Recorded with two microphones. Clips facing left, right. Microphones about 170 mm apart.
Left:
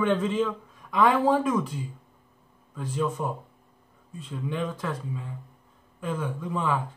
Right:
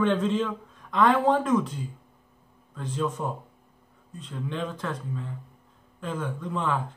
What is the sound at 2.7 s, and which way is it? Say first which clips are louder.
A woman's voice: left 1 dB; 5° left (ahead or behind).